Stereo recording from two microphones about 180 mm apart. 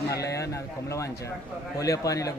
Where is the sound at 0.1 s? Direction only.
20° left (ahead or behind).